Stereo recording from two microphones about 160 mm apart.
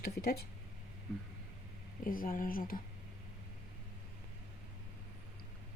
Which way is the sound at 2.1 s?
60° left (ahead or behind).